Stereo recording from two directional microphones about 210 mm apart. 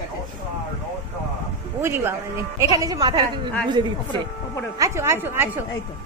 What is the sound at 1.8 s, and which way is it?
A woman's voice, 10° right (ahead or behind).